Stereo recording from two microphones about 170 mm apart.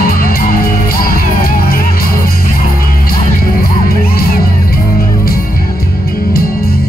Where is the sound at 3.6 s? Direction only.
60° left (ahead or behind).